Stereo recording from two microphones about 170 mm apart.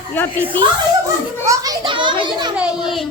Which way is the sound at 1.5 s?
25° right (ahead or behind).